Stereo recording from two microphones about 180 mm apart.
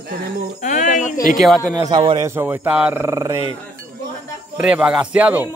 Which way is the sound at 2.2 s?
10° right (ahead or behind).